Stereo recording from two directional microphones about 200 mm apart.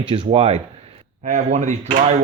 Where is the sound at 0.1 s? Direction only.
30° right (ahead or behind).